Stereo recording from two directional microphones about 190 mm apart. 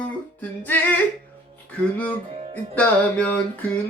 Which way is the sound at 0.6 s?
10° left (ahead or behind).